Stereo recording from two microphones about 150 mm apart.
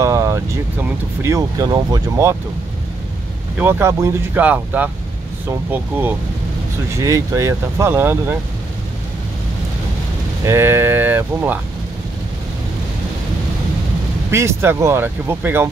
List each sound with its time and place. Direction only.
0.0 s vehicle: 20° right (ahead or behind)
0.8 s speech: 20° right (ahead or behind)
3.5 s speech: 15° right (ahead or behind)
10.4 s speech: 15° right (ahead or behind)
14.3 s speech: 15° right (ahead or behind)